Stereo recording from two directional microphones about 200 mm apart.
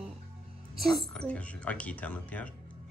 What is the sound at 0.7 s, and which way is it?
A woman's voice, 5° left (ahead or behind).